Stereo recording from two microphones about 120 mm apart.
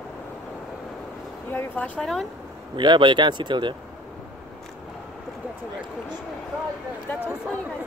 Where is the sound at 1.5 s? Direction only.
15° left (ahead or behind).